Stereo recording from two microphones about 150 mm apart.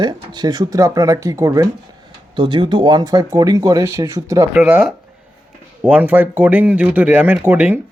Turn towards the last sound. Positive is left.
turn(degrees=-10)  # may be behind; listen again after turning